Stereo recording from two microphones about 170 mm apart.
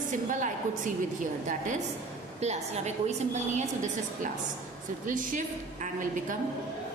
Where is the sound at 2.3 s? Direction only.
40° right (ahead or behind).